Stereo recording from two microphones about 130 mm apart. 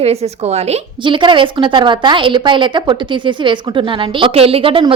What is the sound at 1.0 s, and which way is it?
A woman's voice, 40° right (ahead or behind).